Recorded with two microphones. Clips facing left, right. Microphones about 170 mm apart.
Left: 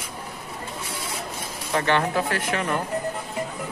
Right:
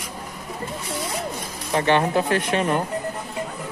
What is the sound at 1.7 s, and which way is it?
Speech, 20° right (ahead or behind).